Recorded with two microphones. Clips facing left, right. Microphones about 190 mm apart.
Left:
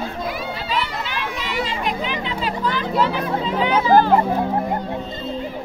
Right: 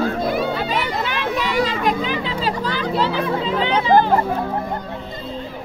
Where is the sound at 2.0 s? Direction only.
35° right (ahead or behind).